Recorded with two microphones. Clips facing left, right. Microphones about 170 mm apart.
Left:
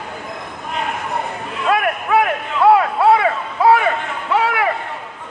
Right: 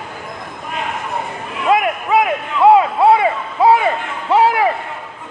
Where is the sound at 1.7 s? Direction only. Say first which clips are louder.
Right 2 dB; 15° right (ahead or behind).